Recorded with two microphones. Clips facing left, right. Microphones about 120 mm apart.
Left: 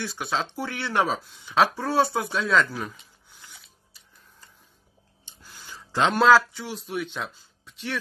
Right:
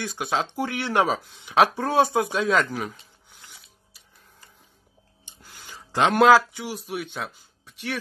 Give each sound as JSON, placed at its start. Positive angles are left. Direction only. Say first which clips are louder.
{"t": 0.0, "sound": "speech", "louder": "right 2 dB", "side_deg": -15}
{"t": 1.8, "sound": "a sound", "louder": "right 3 dB", "side_deg": -15}
{"t": 7.1, "sound": "speech", "louder": "right 1 dB", "side_deg": -50}